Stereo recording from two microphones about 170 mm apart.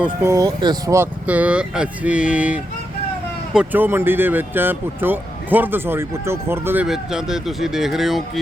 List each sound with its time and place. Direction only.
0.0 s speech: 15° right (ahead or behind)
1.3 s speech: 10° right (ahead or behind)
6.8 s speech: 5° right (ahead or behind)